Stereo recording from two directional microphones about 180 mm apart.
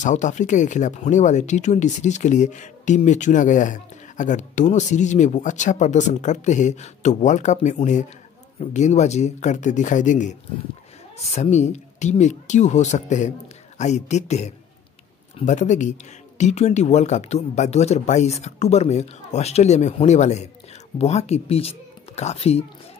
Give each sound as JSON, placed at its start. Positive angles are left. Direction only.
{"t": 0.0, "sound": "speech", "side_deg": 40}
{"t": 11.3, "sound": "speech", "side_deg": 40}